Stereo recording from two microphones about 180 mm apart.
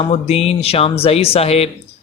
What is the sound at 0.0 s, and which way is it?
Speech, 35° left (ahead or behind).